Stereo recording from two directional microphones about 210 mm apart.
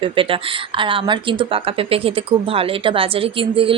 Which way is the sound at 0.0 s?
25° right (ahead or behind).